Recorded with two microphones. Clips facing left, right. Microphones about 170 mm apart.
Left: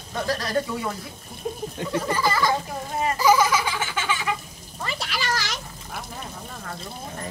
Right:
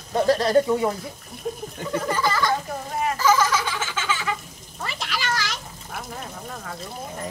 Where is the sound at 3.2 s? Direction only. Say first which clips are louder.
Left 2 dB; 15° left (ahead or behind).